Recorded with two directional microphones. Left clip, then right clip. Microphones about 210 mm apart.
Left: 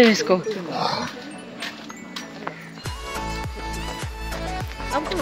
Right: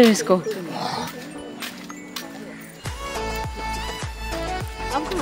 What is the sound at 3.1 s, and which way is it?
Music, centre (ahead or behind).